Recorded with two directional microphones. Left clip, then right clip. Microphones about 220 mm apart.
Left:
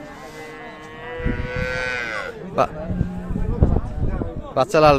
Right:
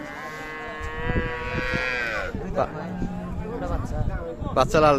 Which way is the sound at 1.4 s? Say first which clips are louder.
Left 3 dB; 45° left (ahead or behind).